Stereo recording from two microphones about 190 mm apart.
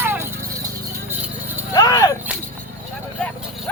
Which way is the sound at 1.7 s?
20° left (ahead or behind).